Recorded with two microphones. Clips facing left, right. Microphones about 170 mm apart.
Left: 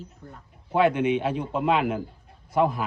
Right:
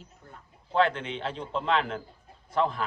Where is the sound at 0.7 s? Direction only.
10° left (ahead or behind).